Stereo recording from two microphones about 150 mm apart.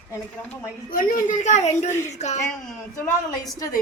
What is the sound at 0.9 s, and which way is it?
A woman's voice, 65° left (ahead or behind).